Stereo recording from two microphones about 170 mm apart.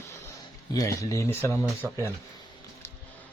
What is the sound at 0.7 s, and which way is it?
Speech, 20° left (ahead or behind).